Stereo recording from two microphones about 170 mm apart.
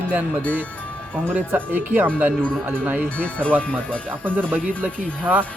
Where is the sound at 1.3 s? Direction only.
10° right (ahead or behind).